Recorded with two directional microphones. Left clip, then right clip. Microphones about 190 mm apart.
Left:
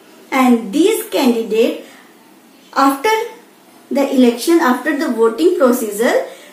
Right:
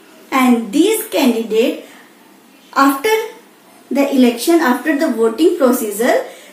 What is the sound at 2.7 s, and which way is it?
A woman's voice, 15° right (ahead or behind).